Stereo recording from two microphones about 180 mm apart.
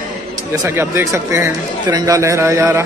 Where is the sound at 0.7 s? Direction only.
15° right (ahead or behind).